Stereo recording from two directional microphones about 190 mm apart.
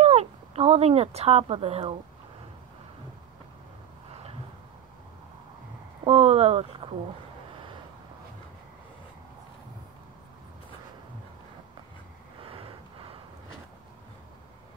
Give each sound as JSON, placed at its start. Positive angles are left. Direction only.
{"t": 0.0, "sound": "speech", "side_deg": -35}
{"t": 6.0, "sound": "speech", "side_deg": -30}